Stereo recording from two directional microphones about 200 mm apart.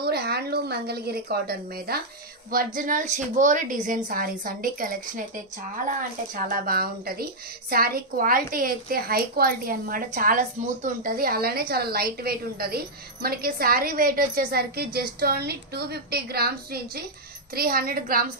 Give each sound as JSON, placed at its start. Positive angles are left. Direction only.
{"t": 0.0, "sound": "a woman's voice", "side_deg": -50}